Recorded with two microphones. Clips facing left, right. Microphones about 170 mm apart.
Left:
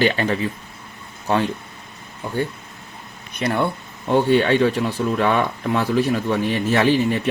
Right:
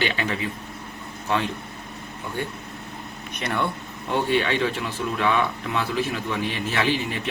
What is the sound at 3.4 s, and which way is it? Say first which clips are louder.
Speech: left 5 dB; 35° left (ahead or behind).